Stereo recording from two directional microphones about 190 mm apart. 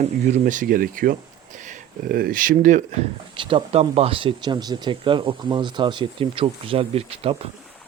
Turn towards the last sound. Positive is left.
turn(degrees=-30)  # may be behind; listen again after turning